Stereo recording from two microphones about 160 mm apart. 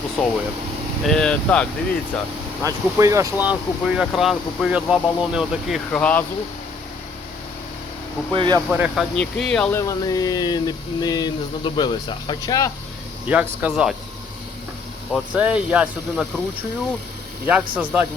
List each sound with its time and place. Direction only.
0.2 s speech: centre (ahead or behind)
2.6 s speech: 20° right (ahead or behind); by 6.0 s centre (ahead or behind)
6.0 s speech: 10° left (ahead or behind)
8.3 s speech: 30° right (ahead or behind)
8.7 s speech: 10° right (ahead or behind)
9.1 s speech: 5° left (ahead or behind)
9.7 s a sound: 20° left (ahead or behind)
13.2 s speech: 10° right (ahead or behind)
15.1 s speech: 10° right (ahead or behind)
17.4 s speech: 10° right (ahead or behind)